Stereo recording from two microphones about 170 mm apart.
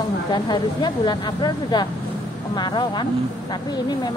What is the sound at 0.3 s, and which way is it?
Speech, 25° left (ahead or behind).